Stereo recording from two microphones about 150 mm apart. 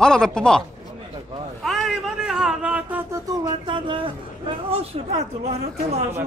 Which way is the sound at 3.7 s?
35° right (ahead or behind).